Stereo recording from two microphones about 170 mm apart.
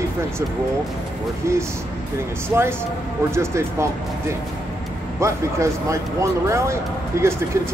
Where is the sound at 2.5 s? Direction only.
15° right (ahead or behind).